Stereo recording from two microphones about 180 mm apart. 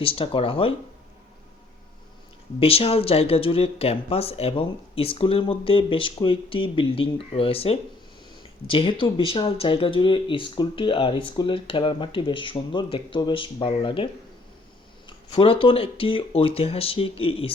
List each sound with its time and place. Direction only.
0.0 s speech: 30° left (ahead or behind)
2.6 s speech: 30° left (ahead or behind)